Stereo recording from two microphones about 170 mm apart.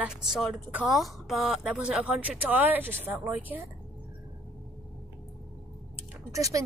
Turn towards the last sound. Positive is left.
turn(degrees=-20)  # may be behind; listen again after turning